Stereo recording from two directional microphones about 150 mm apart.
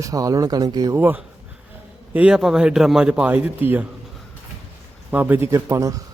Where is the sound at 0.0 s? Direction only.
25° right (ahead or behind).